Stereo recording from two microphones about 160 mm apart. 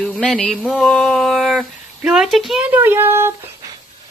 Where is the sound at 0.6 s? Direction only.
Centre (ahead or behind).